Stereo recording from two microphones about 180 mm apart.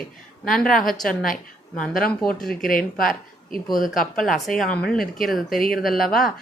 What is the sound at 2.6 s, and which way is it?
Speech, 50° left (ahead or behind).